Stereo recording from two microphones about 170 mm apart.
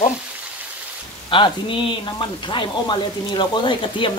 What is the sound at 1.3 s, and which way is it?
Speech, 30° left (ahead or behind).